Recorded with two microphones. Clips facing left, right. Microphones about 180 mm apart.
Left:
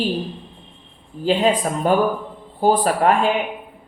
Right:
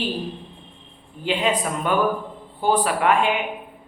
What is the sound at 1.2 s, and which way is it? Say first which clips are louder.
Speech: left 5 dB; 35° left (ahead or behind).